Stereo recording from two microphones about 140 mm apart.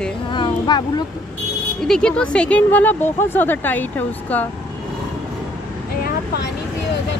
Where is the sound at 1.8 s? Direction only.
5° left (ahead or behind).